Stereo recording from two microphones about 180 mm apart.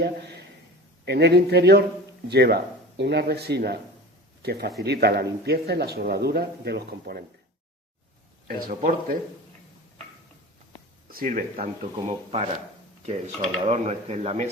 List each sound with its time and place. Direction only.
1.0 s a man's voice: 65° right (ahead or behind)
8.4 s speech: 50° right (ahead or behind)
11.1 s speech: 50° right (ahead or behind)
13.1 s speech: 40° right (ahead or behind)